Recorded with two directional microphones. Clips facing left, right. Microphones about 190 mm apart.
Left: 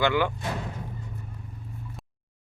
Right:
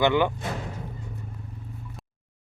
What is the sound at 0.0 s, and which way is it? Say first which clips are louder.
Speech: right 3 dB; 20° right (ahead or behind).